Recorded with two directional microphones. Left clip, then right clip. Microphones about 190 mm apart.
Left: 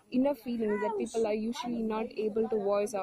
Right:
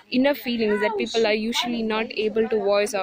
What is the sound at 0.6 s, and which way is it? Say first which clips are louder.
Speech: right 9 dB; 55° right (ahead or behind).